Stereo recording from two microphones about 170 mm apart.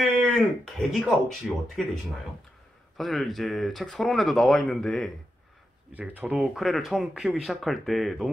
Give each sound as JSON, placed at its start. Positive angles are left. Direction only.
{"t": 0.0, "sound": "speech", "side_deg": 0}
{"t": 3.0, "sound": "speech", "side_deg": 0}
{"t": 5.9, "sound": "speech", "side_deg": -10}